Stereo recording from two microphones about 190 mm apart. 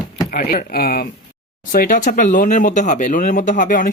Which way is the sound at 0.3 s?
50° left (ahead or behind).